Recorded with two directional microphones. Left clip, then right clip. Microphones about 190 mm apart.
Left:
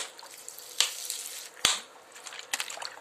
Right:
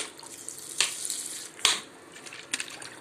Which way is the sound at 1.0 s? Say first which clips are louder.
Right 1 dB; 15° left (ahead or behind).